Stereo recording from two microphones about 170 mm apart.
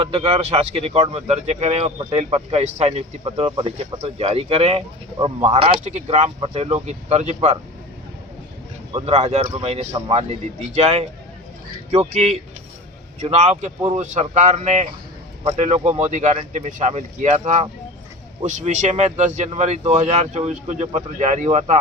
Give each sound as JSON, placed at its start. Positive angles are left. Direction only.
{"t": 0.0, "sound": "speech", "side_deg": -35}
{"t": 5.1, "sound": "speech", "side_deg": -25}
{"t": 9.0, "sound": "a man's voice", "side_deg": -40}
{"t": 10.7, "sound": "a man's voice", "side_deg": -40}